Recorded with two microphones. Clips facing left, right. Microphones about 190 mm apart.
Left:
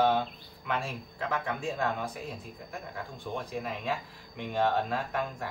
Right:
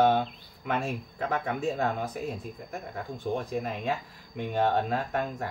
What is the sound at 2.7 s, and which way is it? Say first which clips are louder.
Speech: right 3 dB; 45° right (ahead or behind).